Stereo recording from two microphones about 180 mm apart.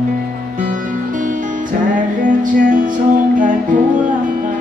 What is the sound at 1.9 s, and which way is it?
Music, 45° right (ahead or behind).